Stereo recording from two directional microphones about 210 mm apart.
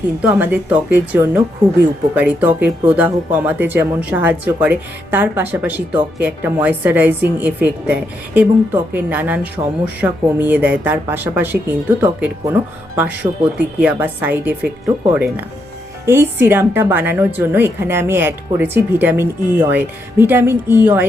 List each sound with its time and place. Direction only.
0.2 s a woman's voice: 10° right (ahead or behind)
13.2 s speech: 25° right (ahead or behind)
13.7 s a woman's voice: 10° right (ahead or behind)